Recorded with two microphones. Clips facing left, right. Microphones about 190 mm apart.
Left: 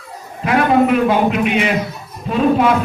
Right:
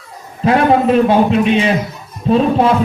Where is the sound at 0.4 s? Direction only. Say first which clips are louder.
Right 2 dB; 30° right (ahead or behind).